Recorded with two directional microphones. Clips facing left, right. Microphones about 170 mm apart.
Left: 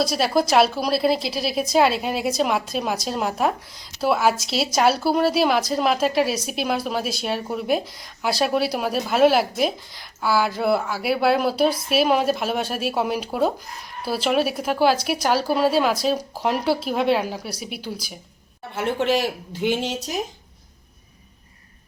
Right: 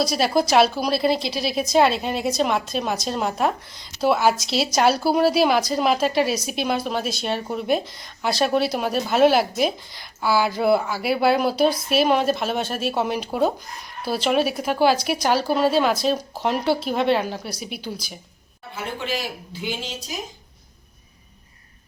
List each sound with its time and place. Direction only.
0.0 s a woman's voice: 5° left (ahead or behind)
18.7 s speech: 65° left (ahead or behind)